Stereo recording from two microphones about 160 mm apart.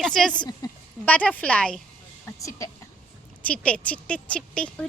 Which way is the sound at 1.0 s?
10° left (ahead or behind).